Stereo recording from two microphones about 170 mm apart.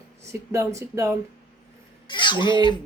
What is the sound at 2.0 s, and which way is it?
Speech, 30° left (ahead or behind).